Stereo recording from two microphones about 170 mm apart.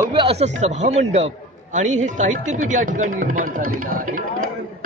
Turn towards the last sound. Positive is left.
turn(degrees=-55)  # may be behind; listen again after turning